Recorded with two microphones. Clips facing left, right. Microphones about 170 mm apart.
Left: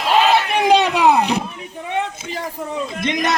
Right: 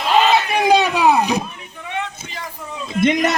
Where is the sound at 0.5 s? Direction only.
10° right (ahead or behind).